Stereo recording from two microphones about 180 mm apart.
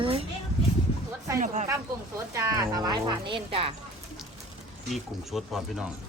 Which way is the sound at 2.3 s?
20° right (ahead or behind).